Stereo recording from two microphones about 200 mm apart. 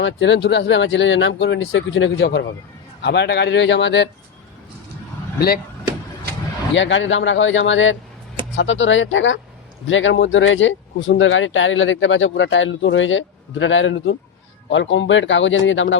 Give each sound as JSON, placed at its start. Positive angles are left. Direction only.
{"t": 0.0, "sound": "speech", "side_deg": 65}
{"t": 6.7, "sound": "speech", "side_deg": 65}